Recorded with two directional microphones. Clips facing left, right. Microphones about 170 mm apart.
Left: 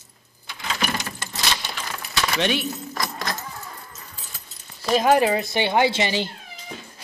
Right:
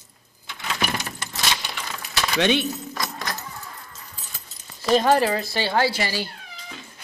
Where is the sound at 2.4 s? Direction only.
25° right (ahead or behind).